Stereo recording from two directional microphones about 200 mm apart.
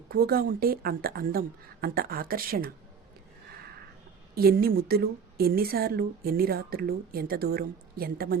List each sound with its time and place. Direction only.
0.1 s a woman's voice: 50° right (ahead or behind)
4.4 s a woman's voice: 50° right (ahead or behind)